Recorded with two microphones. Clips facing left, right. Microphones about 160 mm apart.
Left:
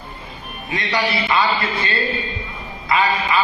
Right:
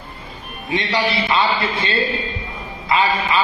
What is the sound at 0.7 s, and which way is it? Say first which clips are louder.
A man's voice: right 2 dB; 25° right (ahead or behind).